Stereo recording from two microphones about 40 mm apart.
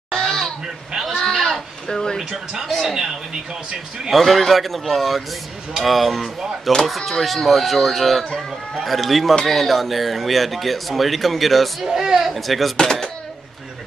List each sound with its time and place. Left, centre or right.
0.1 s a sound: centre
0.9 s speech: centre
1.2 s a sound: centre
1.9 s speech: centre
2.1 s speech: centre
4.1 s speech: centre
11.8 s speech: centre
12.3 s speech: centre